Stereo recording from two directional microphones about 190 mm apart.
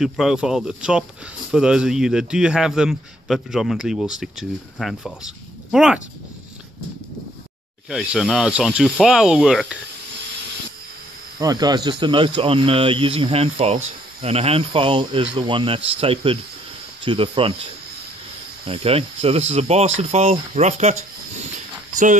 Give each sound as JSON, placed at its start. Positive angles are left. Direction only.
{"t": 0.0, "sound": "a man's voice", "side_deg": 0}
{"t": 7.9, "sound": "a man's voice", "side_deg": -5}
{"t": 11.3, "sound": "speech", "side_deg": -20}
{"t": 18.7, "sound": "speech", "side_deg": -30}